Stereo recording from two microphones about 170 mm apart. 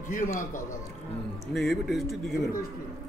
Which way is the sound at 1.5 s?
Centre (ahead or behind).